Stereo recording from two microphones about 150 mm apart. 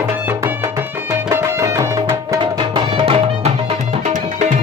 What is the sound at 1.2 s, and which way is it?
Music, 20° right (ahead or behind).